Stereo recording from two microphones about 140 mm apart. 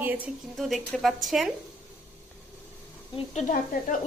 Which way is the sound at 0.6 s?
Centre (ahead or behind).